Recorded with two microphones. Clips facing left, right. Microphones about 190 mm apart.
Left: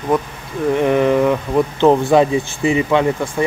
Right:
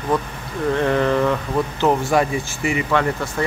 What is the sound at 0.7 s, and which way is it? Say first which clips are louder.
Speech: left 4 dB; 15° left (ahead or behind).